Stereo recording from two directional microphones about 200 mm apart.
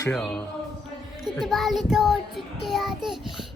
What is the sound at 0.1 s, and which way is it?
Child singing, 5° left (ahead or behind).